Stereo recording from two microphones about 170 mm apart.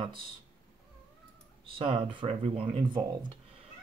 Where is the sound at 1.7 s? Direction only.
30° right (ahead or behind).